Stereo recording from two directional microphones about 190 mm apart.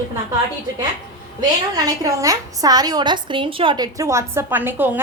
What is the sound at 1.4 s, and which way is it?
A woman's voice, 20° right (ahead or behind).